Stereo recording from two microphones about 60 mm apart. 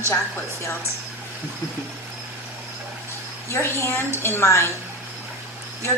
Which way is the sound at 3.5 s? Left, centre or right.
Left.